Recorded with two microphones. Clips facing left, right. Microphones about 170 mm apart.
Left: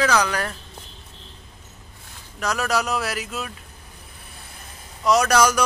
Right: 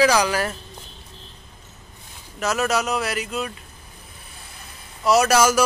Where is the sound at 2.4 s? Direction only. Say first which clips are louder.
Right 2 dB; 5° right (ahead or behind).